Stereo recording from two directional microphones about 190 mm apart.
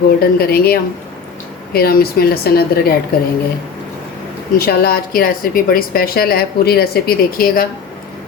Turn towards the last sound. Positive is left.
turn(degrees=50)  # may be behind; listen again after turning